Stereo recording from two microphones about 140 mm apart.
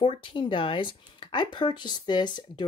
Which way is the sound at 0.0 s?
40° left (ahead or behind).